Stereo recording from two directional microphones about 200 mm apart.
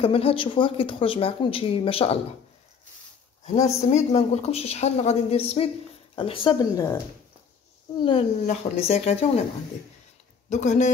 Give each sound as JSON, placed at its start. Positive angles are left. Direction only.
{"t": 0.0, "sound": "speech", "side_deg": 30}
{"t": 3.4, "sound": "speech", "side_deg": 35}
{"t": 8.0, "sound": "speech", "side_deg": 30}
{"t": 10.5, "sound": "speech", "side_deg": 35}